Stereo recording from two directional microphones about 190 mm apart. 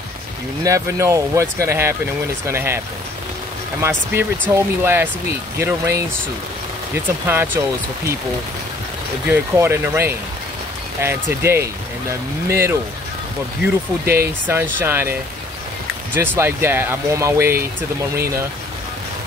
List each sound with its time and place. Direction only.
0.7 s speech: 15° right (ahead or behind)
3.8 s speech: 10° right (ahead or behind)
7.2 s speech: 10° right (ahead or behind)
9.3 s speech: 15° right (ahead or behind)
14.0 s speech: 10° right (ahead or behind)